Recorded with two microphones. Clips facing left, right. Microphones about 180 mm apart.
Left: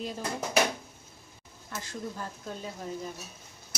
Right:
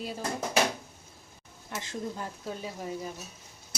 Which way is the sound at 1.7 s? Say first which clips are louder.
Right 2 dB; 20° right (ahead or behind).